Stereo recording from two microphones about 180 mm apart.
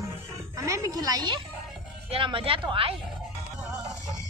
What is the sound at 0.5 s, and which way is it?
A woman's voice, 15° right (ahead or behind).